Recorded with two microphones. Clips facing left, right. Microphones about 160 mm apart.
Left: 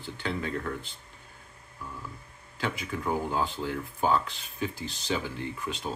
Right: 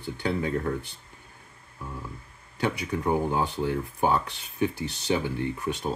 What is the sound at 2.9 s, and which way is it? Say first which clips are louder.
Speech: right 4 dB; 20° right (ahead or behind).